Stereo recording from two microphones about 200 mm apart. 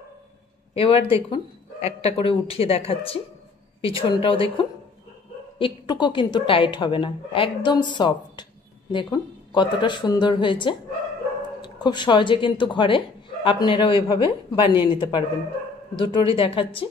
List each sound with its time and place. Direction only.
0.7 s a woman's voice: 30° left (ahead or behind)